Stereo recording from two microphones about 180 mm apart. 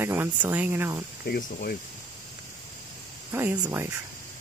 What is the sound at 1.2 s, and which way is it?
Speech, 55° left (ahead or behind).